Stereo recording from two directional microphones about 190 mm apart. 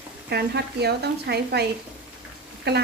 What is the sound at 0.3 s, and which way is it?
A woman's voice, 60° right (ahead or behind).